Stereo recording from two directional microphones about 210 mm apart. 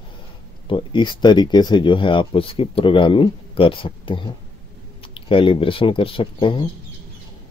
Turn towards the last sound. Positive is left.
turn(degrees=25)  # may be behind; listen again after turning